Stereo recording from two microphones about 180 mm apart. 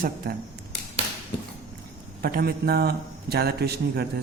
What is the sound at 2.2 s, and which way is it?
A man's voice, 55° right (ahead or behind).